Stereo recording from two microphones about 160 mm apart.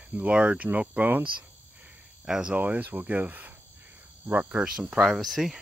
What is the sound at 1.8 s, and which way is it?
Speech, 5° right (ahead or behind).